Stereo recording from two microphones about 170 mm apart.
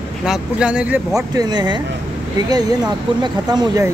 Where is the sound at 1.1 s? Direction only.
20° right (ahead or behind).